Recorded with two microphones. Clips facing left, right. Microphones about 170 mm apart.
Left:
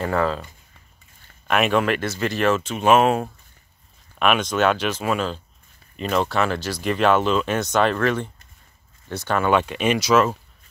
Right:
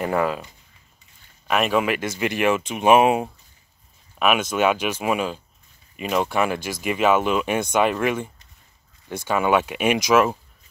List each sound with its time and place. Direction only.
0.0 s speech: 15° right (ahead or behind)
1.5 s speech: 5° right (ahead or behind)